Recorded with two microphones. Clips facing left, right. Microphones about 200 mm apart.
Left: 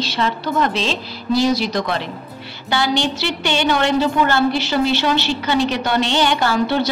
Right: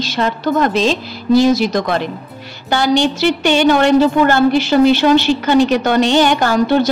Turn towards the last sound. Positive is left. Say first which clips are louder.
# right 5 dB
turn(degrees=-45)  # may be behind; listen again after turning